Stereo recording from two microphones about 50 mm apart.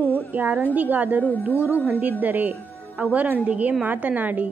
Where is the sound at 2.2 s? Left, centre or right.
Right.